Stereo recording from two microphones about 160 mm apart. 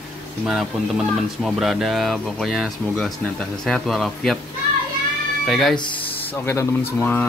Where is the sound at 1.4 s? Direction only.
Centre (ahead or behind).